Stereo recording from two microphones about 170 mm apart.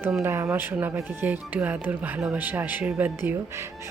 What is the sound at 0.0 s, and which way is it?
Speech, 10° right (ahead or behind).